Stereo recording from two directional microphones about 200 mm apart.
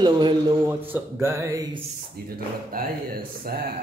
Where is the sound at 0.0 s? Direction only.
20° right (ahead or behind).